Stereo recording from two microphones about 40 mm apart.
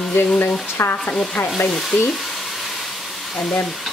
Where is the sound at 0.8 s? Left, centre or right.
Left.